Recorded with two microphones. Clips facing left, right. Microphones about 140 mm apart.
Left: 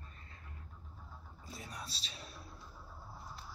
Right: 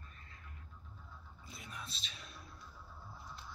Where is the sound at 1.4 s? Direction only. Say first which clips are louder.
Left 3 dB; 35° left (ahead or behind).